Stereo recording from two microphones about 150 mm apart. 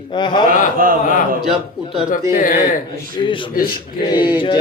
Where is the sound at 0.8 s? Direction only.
70° right (ahead or behind).